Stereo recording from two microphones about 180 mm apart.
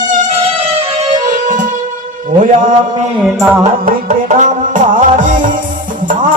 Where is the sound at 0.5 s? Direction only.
35° right (ahead or behind).